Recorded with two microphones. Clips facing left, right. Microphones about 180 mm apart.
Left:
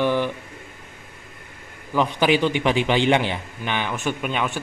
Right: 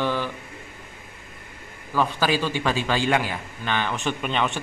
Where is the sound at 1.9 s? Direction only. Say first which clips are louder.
Left 3 dB; 20° left (ahead or behind).